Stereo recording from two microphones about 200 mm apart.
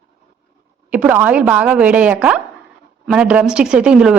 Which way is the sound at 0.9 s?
10° right (ahead or behind).